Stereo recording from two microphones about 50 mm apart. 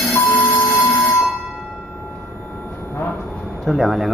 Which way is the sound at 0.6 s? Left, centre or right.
Left.